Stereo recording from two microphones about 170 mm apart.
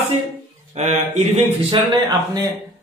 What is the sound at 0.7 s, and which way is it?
Speech, 45° right (ahead or behind).